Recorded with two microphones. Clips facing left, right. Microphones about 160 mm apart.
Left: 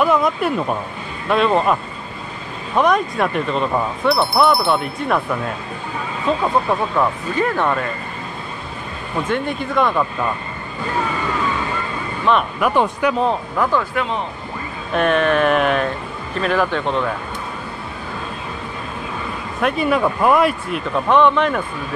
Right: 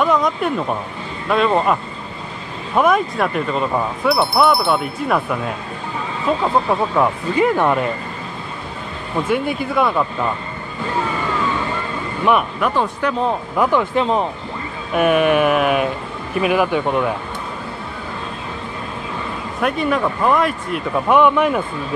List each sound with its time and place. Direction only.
0.0 s speech: 5° left (ahead or behind)
6.4 s speech: 15° right (ahead or behind)
9.3 s speech: 5° right (ahead or behind)
12.7 s speech: 15° left (ahead or behind)
13.6 s speech: 20° right (ahead or behind)
19.6 s speech: 5° left (ahead or behind)
20.7 s speech: 10° right (ahead or behind)